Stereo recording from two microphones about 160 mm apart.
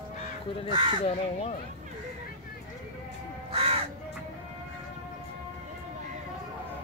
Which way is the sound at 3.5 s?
35° right (ahead or behind).